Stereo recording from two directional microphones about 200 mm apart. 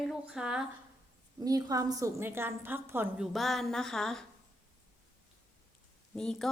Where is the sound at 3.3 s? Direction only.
Centre (ahead or behind).